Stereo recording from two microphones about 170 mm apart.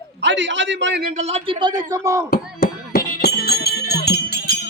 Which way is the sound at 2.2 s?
60° left (ahead or behind).